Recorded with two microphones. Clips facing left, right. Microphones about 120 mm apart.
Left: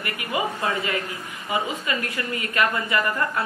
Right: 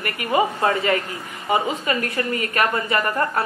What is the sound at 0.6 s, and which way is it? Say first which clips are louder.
Speech: right 6 dB; 60° right (ahead or behind).